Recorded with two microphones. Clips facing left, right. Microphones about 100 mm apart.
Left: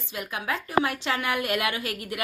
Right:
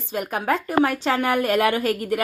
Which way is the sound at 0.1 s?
45° right (ahead or behind).